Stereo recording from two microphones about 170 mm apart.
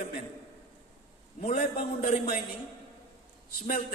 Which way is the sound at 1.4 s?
35° left (ahead or behind).